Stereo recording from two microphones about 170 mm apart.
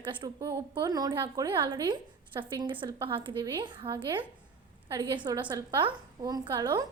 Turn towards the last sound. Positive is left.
turn(degrees=-25)  # may be behind; listen again after turning